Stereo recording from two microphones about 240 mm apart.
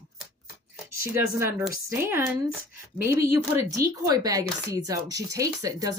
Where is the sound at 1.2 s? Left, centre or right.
Centre.